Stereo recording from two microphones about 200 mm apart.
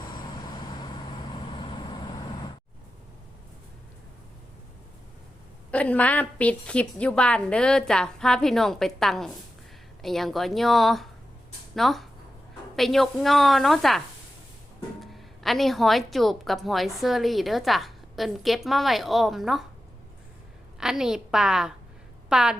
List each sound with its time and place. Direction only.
0.0 s vehicle: 20° left (ahead or behind)
5.7 s a woman's voice: 5° left (ahead or behind)
15.0 s a woman's voice: centre (ahead or behind)
20.7 s a woman's voice: 5° right (ahead or behind)